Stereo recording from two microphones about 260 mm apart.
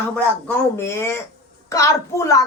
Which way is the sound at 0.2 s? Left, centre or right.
Centre.